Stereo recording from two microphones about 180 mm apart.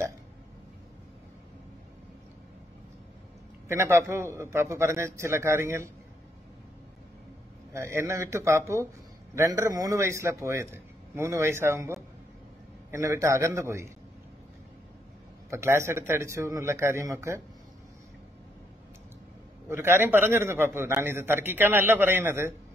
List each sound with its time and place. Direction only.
3.6 s a man's voice: 15° right (ahead or behind)
7.7 s a man's voice: 15° right (ahead or behind)
15.5 s a man's voice: 15° right (ahead or behind)
19.7 s a man's voice: 15° right (ahead or behind)